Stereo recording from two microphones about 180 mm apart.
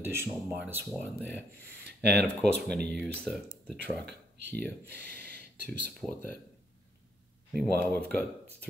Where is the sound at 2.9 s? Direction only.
Centre (ahead or behind).